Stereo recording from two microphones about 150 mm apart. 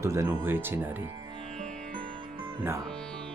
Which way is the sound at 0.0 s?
20° right (ahead or behind).